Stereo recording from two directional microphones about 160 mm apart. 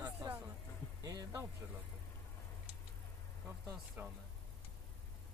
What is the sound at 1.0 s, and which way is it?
Music, 20° right (ahead or behind).